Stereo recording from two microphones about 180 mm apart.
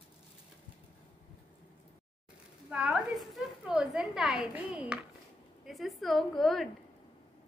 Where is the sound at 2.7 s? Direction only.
5° right (ahead or behind).